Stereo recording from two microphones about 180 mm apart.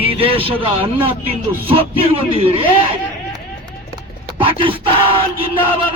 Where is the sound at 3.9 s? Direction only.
25° right (ahead or behind).